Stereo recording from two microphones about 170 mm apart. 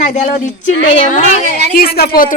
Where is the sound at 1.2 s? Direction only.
45° right (ahead or behind).